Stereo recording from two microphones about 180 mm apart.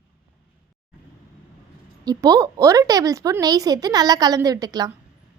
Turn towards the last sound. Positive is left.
turn(degrees=-20)  # may be behind; listen again after turning